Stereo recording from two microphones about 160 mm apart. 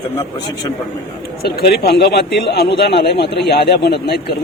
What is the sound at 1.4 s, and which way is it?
Speech, 80° left.